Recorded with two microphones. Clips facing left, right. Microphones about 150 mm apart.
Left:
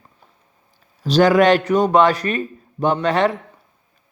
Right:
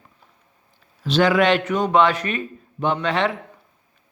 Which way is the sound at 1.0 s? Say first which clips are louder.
Left 4 dB; 40° left (ahead or behind).